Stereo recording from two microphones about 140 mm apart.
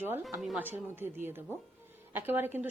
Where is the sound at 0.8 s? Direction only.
15° right (ahead or behind).